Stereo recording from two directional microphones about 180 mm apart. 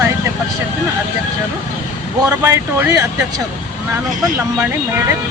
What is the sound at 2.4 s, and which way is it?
Speech, 10° right (ahead or behind).